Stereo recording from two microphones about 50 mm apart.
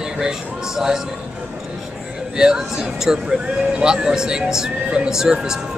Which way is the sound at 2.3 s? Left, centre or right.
Centre.